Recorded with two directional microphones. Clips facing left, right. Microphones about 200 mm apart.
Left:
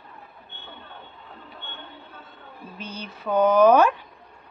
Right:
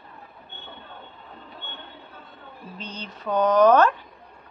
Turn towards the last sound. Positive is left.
turn(degrees=10)  # may be behind; listen again after turning